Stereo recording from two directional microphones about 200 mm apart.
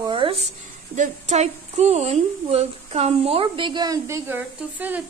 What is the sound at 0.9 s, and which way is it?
A woman's voice, 35° right (ahead or behind).